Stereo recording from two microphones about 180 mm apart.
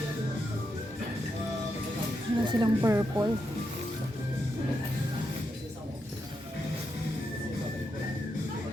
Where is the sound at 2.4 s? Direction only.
25° right (ahead or behind).